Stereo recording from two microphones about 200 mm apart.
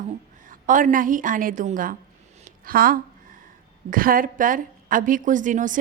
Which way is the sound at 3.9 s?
45° right (ahead or behind).